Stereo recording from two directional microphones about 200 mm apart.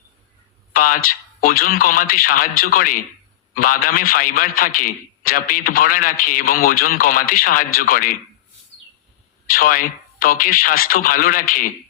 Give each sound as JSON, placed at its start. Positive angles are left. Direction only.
{"t": 0.7, "sound": "a man's voice", "side_deg": 45}
{"t": 9.5, "sound": "a man's voice", "side_deg": 45}